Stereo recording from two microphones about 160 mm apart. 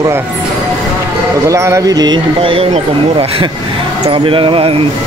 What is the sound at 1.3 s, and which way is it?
Speech, 20° right (ahead or behind).